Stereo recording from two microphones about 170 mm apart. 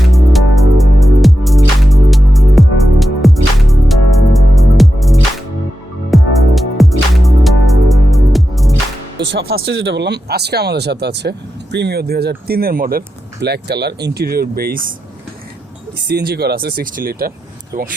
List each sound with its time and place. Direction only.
0.0 s music: centre (ahead or behind)
9.1 s speech: 90° right; by 14.8 s 60° right (ahead or behind)
16.0 s speech: 75° right (ahead or behind); by 17.9 s 55° right (ahead or behind)